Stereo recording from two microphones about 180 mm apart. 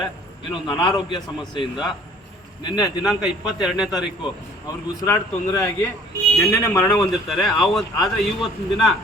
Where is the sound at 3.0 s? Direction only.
5° right (ahead or behind).